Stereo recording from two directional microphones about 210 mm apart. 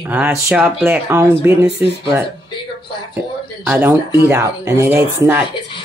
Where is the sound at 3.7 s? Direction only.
10° right (ahead or behind).